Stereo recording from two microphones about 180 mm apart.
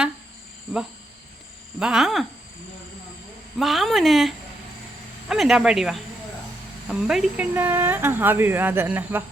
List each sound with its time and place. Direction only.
1.8 s speech: 5° right (ahead or behind)
3.6 s speech: centre (ahead or behind)